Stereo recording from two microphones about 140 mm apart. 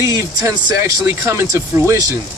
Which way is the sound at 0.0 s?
20° right (ahead or behind).